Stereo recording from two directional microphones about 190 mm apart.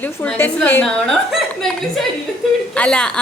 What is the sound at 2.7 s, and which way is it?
Speech, 5° left (ahead or behind).